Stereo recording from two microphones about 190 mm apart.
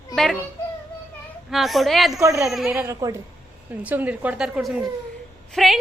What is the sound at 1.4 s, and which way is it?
A woman's voice, centre (ahead or behind).